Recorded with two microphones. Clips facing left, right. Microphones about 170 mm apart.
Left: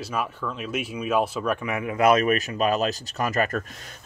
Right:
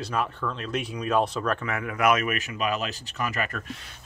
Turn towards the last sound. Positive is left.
turn(degrees=40)  # may be behind; listen again after turning